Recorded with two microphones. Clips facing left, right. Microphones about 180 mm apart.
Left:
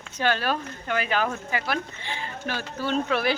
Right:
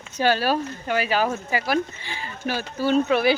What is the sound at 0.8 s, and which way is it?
Speech, 10° right (ahead or behind).